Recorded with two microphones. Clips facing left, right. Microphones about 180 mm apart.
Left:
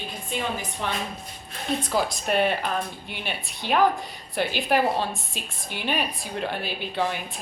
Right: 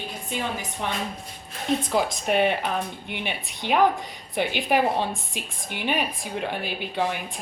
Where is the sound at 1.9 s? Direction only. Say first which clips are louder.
Even; 20° right (ahead or behind).